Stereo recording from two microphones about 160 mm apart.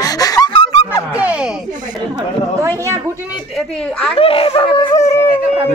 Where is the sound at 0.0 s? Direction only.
25° left (ahead or behind).